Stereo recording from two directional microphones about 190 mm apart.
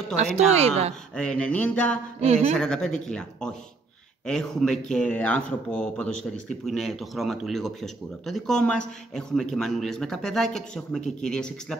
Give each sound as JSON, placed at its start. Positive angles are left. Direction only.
{"t": 0.1, "sound": "a woman's voice", "side_deg": -35}
{"t": 1.1, "sound": "a sound", "side_deg": 5}
{"t": 2.2, "sound": "a woman's voice", "side_deg": -35}
{"t": 2.5, "sound": "speech", "side_deg": 5}